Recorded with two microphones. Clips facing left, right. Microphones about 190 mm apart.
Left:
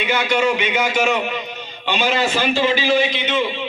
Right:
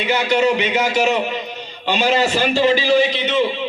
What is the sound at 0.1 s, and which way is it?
A man's voice, 35° right (ahead or behind).